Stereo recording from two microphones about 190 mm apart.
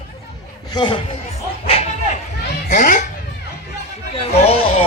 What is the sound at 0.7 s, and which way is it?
Speech, 25° left (ahead or behind).